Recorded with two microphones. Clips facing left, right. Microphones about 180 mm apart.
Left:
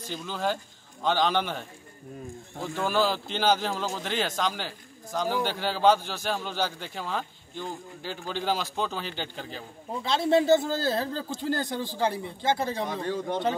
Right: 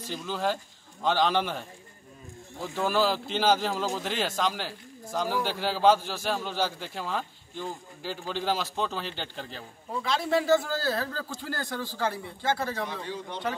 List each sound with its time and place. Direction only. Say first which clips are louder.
0.1 s a man's voice: even; centre (ahead or behind)
2.7 s a man's voice: even; centre (ahead or behind)
10.0 s speech: left 4 dB; 25° left (ahead or behind)
12.8 s a man's voice: left 5 dB; 50° left (ahead or behind)